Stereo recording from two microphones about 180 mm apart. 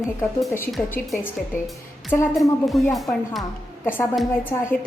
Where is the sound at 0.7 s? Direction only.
10° left (ahead or behind).